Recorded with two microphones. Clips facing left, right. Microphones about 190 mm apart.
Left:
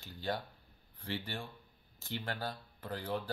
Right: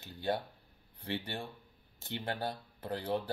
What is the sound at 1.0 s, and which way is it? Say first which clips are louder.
Speech: right 2 dB; 20° right (ahead or behind).